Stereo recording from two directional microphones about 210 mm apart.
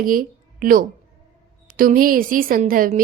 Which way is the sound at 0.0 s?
40° right (ahead or behind).